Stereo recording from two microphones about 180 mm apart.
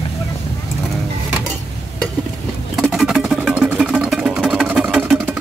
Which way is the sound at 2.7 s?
Centre (ahead or behind).